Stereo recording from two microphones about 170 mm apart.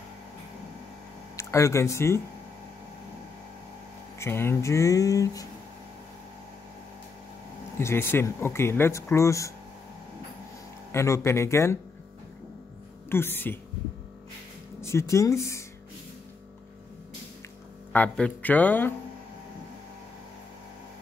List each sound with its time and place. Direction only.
1.3 s speech: 15° left (ahead or behind)
4.2 s speech: 15° left (ahead or behind)
7.8 s speech: 15° left (ahead or behind)
10.9 s speech: 15° left (ahead or behind)
13.1 s speech: 15° left (ahead or behind)
14.8 s speech: 15° left (ahead or behind)
17.9 s speech: 10° left (ahead or behind)